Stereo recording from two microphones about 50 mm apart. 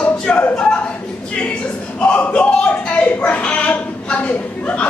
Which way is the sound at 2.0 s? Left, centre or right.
Left.